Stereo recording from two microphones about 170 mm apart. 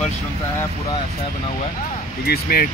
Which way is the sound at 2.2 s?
60° left (ahead or behind).